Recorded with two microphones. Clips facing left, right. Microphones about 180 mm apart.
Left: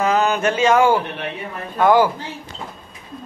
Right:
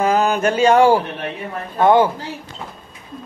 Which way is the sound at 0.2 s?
35° right (ahead or behind).